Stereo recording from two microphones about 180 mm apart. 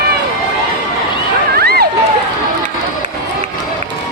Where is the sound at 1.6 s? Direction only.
60° right (ahead or behind).